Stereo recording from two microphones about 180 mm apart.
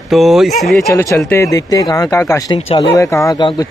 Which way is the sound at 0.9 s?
15° left (ahead or behind).